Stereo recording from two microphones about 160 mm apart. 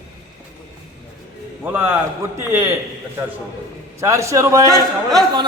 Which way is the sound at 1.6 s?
15° right (ahead or behind).